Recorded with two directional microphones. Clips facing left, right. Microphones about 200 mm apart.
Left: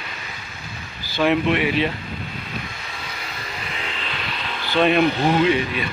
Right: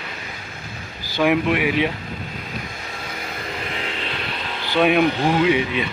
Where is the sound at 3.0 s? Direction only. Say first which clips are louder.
Right 5 dB; 50° right (ahead or behind).